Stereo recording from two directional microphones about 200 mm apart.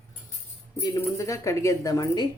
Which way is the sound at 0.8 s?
15° left (ahead or behind).